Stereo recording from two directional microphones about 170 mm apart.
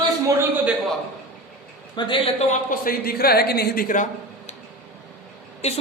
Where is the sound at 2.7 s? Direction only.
55° left (ahead or behind).